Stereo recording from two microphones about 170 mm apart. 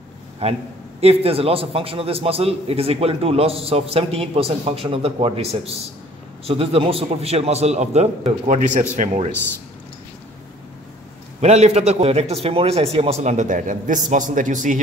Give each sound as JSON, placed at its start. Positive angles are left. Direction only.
{"t": 0.4, "sound": "a man's voice", "side_deg": -35}
{"t": 11.4, "sound": "a man's voice", "side_deg": -40}